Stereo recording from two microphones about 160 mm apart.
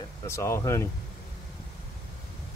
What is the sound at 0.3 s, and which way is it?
Speech, 15° left (ahead or behind).